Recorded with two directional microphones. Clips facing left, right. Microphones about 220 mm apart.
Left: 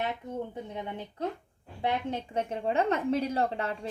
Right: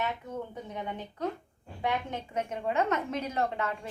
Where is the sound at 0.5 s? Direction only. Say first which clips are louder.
Left 1 dB; 30° left (ahead or behind).